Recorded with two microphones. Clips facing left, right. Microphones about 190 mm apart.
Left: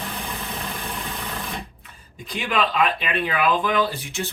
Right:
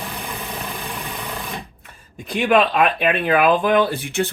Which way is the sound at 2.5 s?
55° right (ahead or behind).